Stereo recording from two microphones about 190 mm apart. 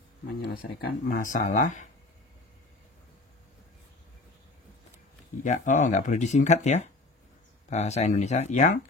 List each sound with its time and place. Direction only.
0.6 s speech: 50° left (ahead or behind)
5.4 s speech: 40° left (ahead or behind)